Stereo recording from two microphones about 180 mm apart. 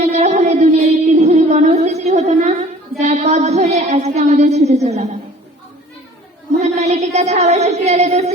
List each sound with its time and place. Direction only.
0.1 s music: 35° right (ahead or behind)
3.0 s a sound: 40° right (ahead or behind)
6.6 s a woman's voice: 40° right (ahead or behind)